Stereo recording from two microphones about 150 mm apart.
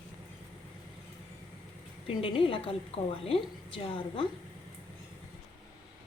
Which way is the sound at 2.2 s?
35° left (ahead or behind).